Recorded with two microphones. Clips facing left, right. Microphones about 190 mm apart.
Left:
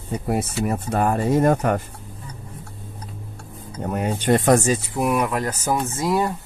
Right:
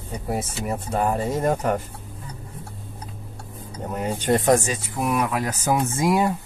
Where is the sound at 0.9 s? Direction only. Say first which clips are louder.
Left 4 dB; 65° left (ahead or behind).